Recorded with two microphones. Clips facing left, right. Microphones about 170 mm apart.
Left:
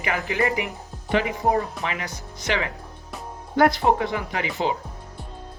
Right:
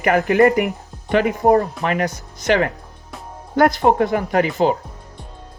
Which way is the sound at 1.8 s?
50° right (ahead or behind).